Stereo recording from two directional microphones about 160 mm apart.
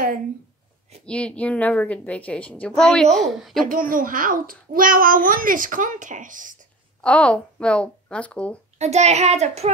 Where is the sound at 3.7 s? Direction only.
60° right (ahead or behind).